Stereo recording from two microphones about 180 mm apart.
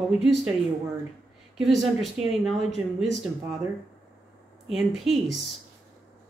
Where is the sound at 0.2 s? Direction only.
Centre (ahead or behind).